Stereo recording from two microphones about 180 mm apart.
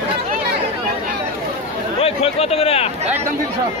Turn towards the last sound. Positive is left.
turn(degrees=35)  # may be behind; listen again after turning